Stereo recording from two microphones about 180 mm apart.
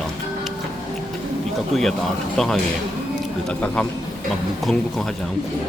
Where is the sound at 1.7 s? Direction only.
Centre (ahead or behind).